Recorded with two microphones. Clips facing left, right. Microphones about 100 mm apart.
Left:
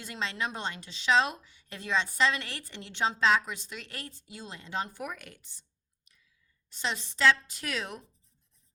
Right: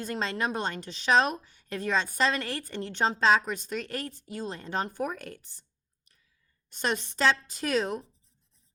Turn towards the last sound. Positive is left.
turn(degrees=-40)  # may be behind; listen again after turning